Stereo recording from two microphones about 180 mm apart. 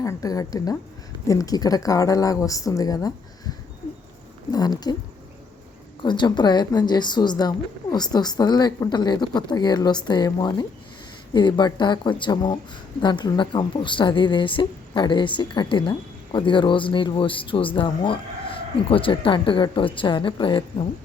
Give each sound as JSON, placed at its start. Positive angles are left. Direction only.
{"t": 0.0, "sound": "speech", "side_deg": 20}
{"t": 4.5, "sound": "speech", "side_deg": 20}
{"t": 6.0, "sound": "speech", "side_deg": 25}